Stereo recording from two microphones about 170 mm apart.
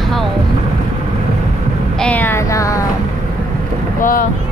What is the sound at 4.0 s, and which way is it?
Speech, 55° left (ahead or behind).